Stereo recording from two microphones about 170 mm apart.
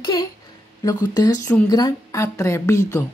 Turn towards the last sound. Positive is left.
turn(degrees=15)  # may be behind; listen again after turning